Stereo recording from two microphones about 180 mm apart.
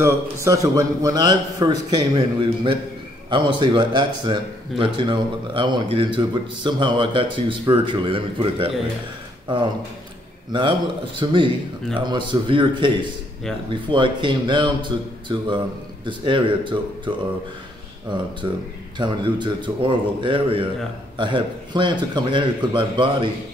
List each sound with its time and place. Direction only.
0.0 s speech: 15° right (ahead or behind)
10.5 s speech: 25° right (ahead or behind)
18.4 s speech: 25° right (ahead or behind)